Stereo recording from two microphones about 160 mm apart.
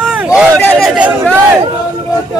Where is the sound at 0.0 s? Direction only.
5° right (ahead or behind).